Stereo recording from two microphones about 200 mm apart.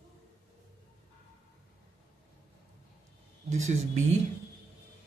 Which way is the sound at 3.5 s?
35° right (ahead or behind).